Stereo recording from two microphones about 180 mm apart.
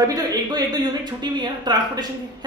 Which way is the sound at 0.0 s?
20° right (ahead or behind).